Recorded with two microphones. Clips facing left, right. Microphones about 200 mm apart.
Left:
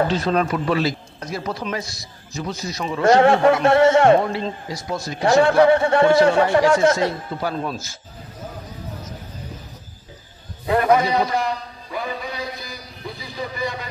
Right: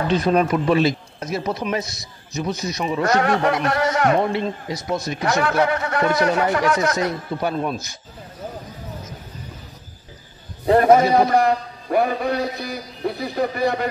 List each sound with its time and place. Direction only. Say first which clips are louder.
0.1 s speech: right 3 dB; 15° right (ahead or behind)
3.0 s speech: left 6 dB; 25° left (ahead or behind)
4.2 s speech: right 2 dB; 20° right (ahead or behind)
5.2 s speech: left 7 dB; 25° left (ahead or behind)
10.7 s a man's voice: right 4 dB; 40° right (ahead or behind)
11.1 s a man's voice: right 5 dB; 55° right (ahead or behind)